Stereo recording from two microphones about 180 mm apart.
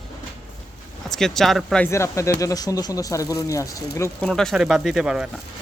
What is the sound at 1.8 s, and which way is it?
Speech, 15° left (ahead or behind).